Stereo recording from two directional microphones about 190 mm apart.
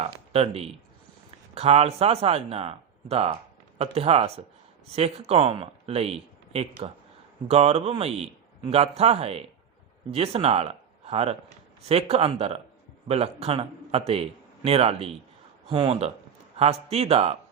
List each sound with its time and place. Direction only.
0.0 s a man's voice: 30° right (ahead or behind)